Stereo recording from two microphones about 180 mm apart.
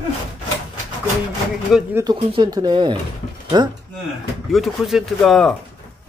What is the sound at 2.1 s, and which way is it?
Speech, 25° right (ahead or behind).